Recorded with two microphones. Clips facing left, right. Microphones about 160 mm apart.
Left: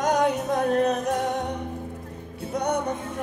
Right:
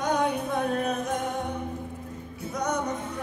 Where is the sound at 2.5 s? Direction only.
30° left (ahead or behind).